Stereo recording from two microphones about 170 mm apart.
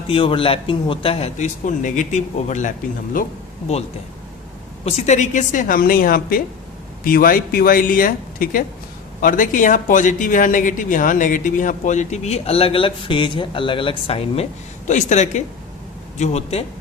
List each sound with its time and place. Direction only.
0.1 s a man's voice: 30° left (ahead or behind); by 3.2 s 50° left (ahead or behind)
3.7 s a man's voice: 40° left (ahead or behind)
4.9 s a man's voice: 40° left (ahead or behind)